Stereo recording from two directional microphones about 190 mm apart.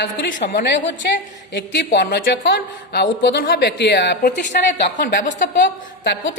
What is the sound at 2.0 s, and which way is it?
A woman's voice, 65° left (ahead or behind).